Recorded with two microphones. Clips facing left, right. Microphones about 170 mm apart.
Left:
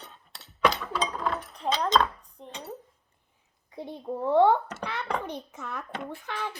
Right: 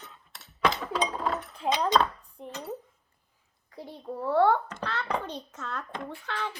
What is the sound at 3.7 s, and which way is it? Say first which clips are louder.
A child's voice: left 4 dB; 20° left (ahead or behind).